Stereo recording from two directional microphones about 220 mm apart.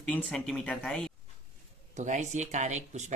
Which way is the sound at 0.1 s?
5° left (ahead or behind).